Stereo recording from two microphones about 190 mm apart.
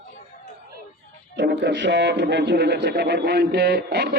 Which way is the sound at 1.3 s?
60° right (ahead or behind).